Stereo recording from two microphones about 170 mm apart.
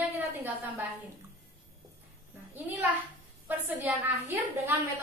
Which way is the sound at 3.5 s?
10° right (ahead or behind).